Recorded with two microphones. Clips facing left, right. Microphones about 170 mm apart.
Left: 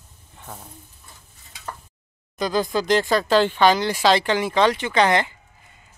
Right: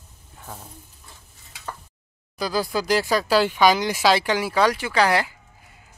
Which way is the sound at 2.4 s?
5° right (ahead or behind).